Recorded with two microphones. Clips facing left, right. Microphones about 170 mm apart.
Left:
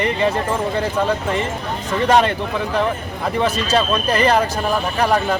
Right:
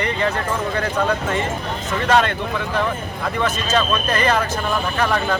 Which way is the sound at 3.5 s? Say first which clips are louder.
Left 2 dB; 30° left (ahead or behind).